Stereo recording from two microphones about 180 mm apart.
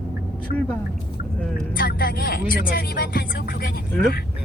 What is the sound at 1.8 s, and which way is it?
Speech, 55° left (ahead or behind).